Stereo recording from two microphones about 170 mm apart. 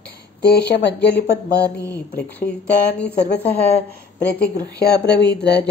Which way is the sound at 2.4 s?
70° left (ahead or behind).